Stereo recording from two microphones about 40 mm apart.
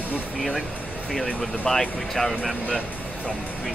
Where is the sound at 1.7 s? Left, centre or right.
Centre.